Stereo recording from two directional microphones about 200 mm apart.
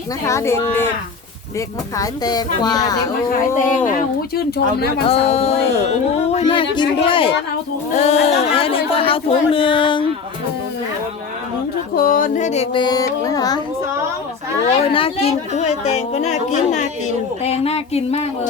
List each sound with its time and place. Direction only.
0.3 s speech: 15° left (ahead or behind)
4.4 s speech: 55° left (ahead or behind)
5.0 s speech: 30° left (ahead or behind)
11.9 s speech: 45° left (ahead or behind)
12.8 s speech: 20° left (ahead or behind)
14.9 s speech: 30° left (ahead or behind)